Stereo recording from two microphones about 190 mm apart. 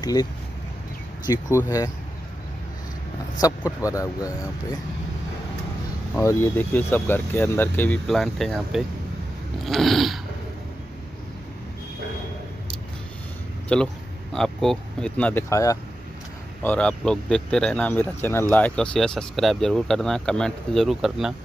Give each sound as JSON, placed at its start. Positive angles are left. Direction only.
{"t": 0.0, "sound": "speech", "side_deg": 20}
{"t": 3.3, "sound": "speech", "side_deg": 15}
{"t": 6.1, "sound": "speech", "side_deg": 10}
{"t": 9.7, "sound": "a sound", "side_deg": 0}
{"t": 13.7, "sound": "speech", "side_deg": 5}
{"t": 16.6, "sound": "speech", "side_deg": 5}